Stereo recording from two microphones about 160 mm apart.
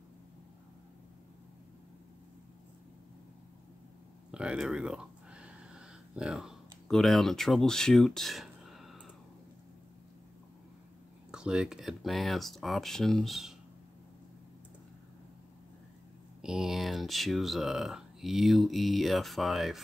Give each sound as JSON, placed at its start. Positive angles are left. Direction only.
{"t": 4.3, "sound": "a sound", "side_deg": -5}
{"t": 11.3, "sound": "speech", "side_deg": -5}
{"t": 16.3, "sound": "speech", "side_deg": -5}